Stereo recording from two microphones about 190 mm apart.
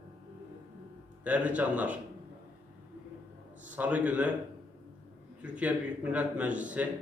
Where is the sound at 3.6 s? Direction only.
10° right (ahead or behind).